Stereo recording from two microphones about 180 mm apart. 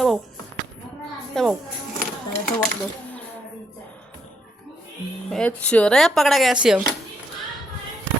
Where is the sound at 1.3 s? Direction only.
Centre (ahead or behind).